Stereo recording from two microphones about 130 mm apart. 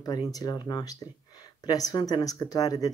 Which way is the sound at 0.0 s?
30° left (ahead or behind).